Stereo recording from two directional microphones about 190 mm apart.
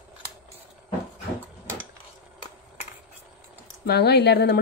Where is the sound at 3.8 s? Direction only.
60° left (ahead or behind).